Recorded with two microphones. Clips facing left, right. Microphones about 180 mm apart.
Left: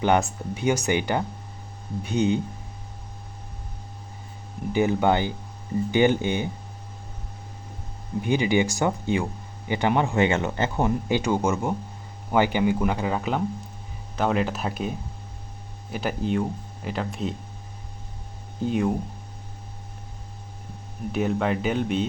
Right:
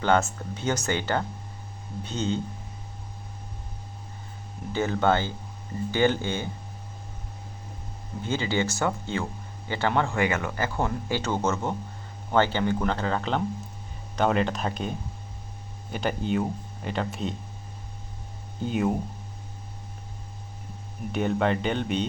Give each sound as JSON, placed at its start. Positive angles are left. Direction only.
{"t": 0.0, "sound": "speech", "side_deg": 15}
{"t": 4.7, "sound": "speech", "side_deg": 15}
{"t": 8.2, "sound": "speech", "side_deg": 15}
{"t": 18.6, "sound": "speech", "side_deg": 0}
{"t": 21.1, "sound": "speech", "side_deg": 0}